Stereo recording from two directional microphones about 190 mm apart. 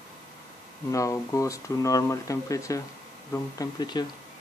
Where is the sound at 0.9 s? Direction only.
15° left (ahead or behind).